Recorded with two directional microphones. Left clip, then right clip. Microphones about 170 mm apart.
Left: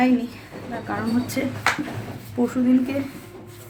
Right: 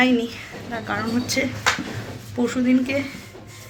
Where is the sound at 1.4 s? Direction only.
15° left (ahead or behind).